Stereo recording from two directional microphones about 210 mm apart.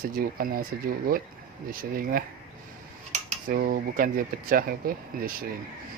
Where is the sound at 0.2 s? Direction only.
45° right (ahead or behind).